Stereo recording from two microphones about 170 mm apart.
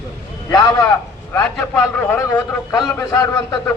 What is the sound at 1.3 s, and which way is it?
A man's voice, 5° left (ahead or behind).